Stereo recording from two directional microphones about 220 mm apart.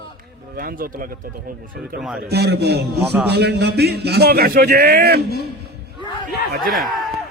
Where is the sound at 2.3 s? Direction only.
50° right (ahead or behind).